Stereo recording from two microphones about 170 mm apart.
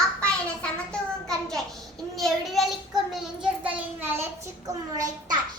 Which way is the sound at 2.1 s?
Centre (ahead or behind).